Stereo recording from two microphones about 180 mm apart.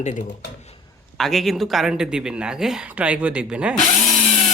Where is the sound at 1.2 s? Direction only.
Centre (ahead or behind).